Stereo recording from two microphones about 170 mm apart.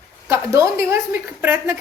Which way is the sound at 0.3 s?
15° right (ahead or behind).